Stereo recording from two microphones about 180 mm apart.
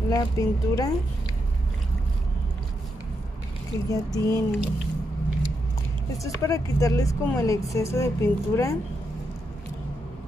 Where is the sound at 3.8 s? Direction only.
15° left (ahead or behind).